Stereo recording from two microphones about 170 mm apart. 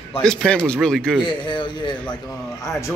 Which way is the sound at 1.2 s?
25° left (ahead or behind).